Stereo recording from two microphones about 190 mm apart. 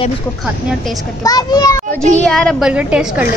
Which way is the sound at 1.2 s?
20° left (ahead or behind).